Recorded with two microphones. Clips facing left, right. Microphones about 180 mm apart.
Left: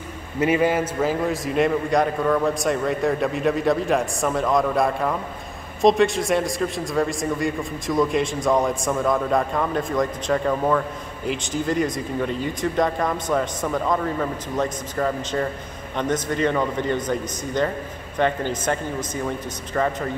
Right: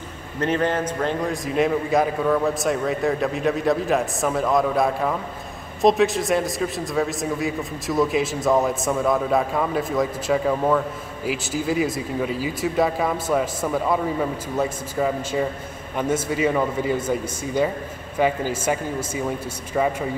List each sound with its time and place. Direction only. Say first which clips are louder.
0.4 s a man's voice: left 2 dB; 10° left (ahead or behind); by 20.1 s 10° right (ahead or behind)